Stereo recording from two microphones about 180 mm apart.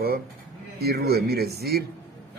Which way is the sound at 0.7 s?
60° right (ahead or behind).